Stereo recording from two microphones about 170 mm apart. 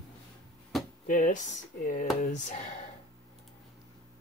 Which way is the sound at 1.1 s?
50° left (ahead or behind).